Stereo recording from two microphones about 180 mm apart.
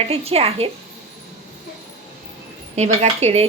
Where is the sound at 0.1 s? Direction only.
35° right (ahead or behind).